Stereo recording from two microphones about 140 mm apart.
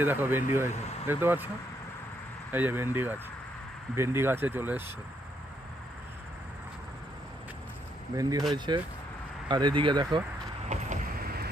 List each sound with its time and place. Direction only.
0.0 s speech: 15° right (ahead or behind)
2.5 s speech: 15° right (ahead or behind)
8.1 s speech: 25° right (ahead or behind)
10.7 s vehicle: 60° right (ahead or behind)